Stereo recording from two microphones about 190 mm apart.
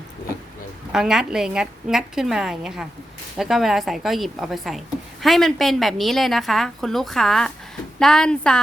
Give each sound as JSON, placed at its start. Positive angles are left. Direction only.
{"t": 0.9, "sound": "a woman's voice", "side_deg": -5}